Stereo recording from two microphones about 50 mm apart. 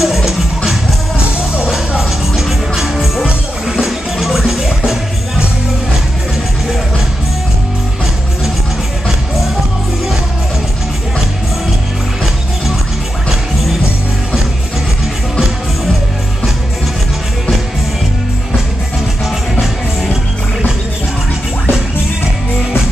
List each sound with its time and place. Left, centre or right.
0.0 s music: centre
2.0 s music: centre